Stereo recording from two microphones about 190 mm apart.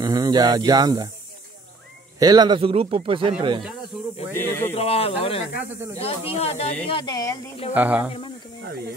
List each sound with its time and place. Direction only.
0.0 s speech: 20° right (ahead or behind)
2.1 s speech: 20° right (ahead or behind)
3.9 s speech: centre (ahead or behind)
4.3 s speech: 10° left (ahead or behind)
4.7 s speech: 30° left (ahead or behind)
7.7 s speech: 10° right (ahead or behind)